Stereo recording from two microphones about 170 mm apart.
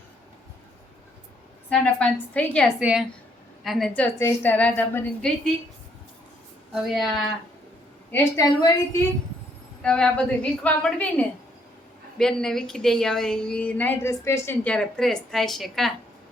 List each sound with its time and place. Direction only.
1.7 s a woman's voice: 5° left (ahead or behind)
2.8 s a woman's voice: 5° right (ahead or behind)
6.8 s a woman's voice: centre (ahead or behind)
8.1 s a woman's voice: 20° left (ahead or behind)
9.8 s a woman's voice: 5° left (ahead or behind)